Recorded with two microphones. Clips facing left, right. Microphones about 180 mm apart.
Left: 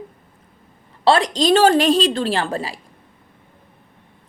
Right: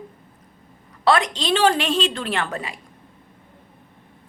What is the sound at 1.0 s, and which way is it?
A woman's voice, 30° left (ahead or behind).